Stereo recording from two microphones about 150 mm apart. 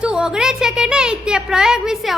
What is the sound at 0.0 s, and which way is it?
A woman's voice, 5° right (ahead or behind).